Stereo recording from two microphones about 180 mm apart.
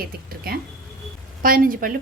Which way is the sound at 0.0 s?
55° right (ahead or behind).